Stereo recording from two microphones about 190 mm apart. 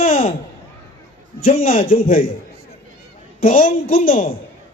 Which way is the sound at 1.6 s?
45° left (ahead or behind).